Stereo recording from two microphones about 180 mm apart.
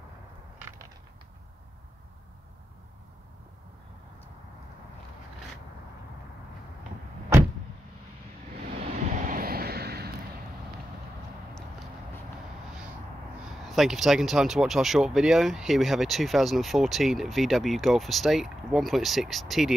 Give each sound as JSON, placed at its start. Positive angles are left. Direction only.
{"t": 0.6, "sound": "crackle", "side_deg": -10}
{"t": 8.9, "sound": "vehicle", "side_deg": -45}
{"t": 13.7, "sound": "speech", "side_deg": 0}